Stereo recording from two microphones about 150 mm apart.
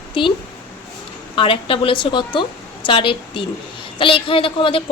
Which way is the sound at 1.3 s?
35° left (ahead or behind).